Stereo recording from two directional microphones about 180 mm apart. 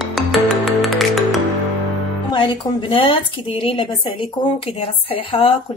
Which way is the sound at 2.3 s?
25° left (ahead or behind).